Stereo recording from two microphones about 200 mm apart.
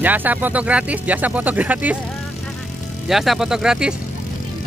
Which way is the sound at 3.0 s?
Centre (ahead or behind).